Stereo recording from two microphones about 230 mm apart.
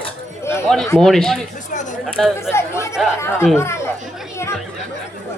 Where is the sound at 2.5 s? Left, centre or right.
Centre.